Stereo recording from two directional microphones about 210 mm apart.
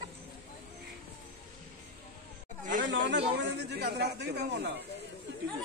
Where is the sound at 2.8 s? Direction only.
55° right (ahead or behind).